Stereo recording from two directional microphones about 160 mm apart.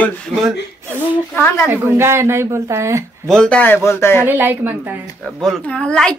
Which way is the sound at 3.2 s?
5° left (ahead or behind).